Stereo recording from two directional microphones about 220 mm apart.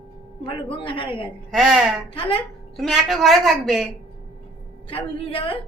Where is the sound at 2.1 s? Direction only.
25° left (ahead or behind).